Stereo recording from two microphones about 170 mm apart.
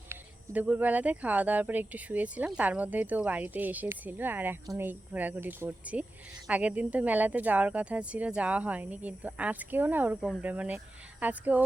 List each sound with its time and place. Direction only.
0.1 s speech: 10° right (ahead or behind)